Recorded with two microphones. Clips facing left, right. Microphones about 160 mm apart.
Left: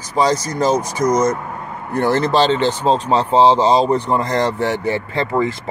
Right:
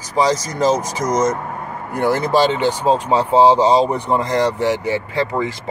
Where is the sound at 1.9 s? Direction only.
10° right (ahead or behind).